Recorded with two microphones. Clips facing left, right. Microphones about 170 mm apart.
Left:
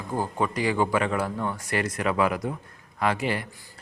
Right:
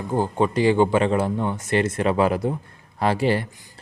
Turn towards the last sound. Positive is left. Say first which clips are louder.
# right 5 dB
turn(degrees=-30)  # may be behind; listen again after turning